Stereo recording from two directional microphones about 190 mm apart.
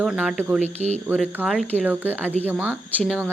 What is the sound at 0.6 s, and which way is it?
Speech, 35° right (ahead or behind).